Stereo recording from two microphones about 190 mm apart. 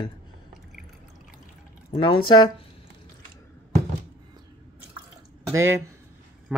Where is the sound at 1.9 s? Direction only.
25° left (ahead or behind).